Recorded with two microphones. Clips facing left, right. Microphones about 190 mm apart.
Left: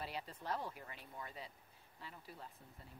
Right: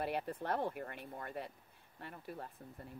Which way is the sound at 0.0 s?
55° right (ahead or behind).